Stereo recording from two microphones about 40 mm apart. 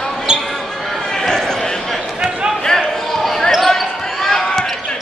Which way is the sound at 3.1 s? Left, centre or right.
Centre.